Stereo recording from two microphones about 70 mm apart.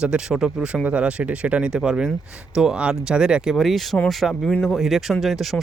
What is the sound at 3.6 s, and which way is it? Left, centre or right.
Speech, centre.